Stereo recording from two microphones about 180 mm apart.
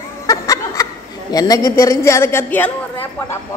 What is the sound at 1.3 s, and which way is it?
A woman's voice, 20° left (ahead or behind).